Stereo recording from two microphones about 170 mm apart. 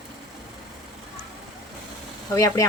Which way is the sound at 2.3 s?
20° left (ahead or behind).